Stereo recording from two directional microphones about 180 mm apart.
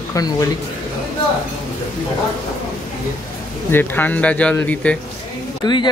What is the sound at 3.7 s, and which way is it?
Speech, 10° left (ahead or behind).